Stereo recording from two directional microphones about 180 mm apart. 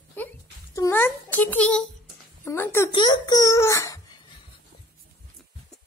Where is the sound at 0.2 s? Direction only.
10° left (ahead or behind).